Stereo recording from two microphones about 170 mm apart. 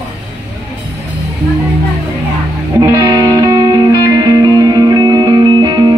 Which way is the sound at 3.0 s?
20° right (ahead or behind).